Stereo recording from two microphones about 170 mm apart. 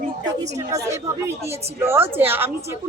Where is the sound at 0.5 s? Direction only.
20° right (ahead or behind).